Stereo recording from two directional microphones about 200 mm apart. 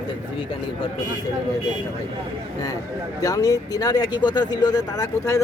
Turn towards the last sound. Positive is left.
turn(degrees=15)  # may be behind; listen again after turning